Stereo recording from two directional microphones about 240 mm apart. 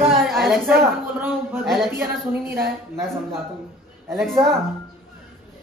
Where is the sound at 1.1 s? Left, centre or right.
Centre.